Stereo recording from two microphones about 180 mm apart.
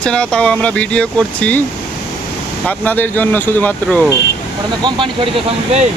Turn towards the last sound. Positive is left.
turn(degrees=-35)  # may be behind; listen again after turning